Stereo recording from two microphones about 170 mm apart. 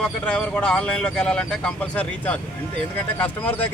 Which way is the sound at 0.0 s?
5° left (ahead or behind).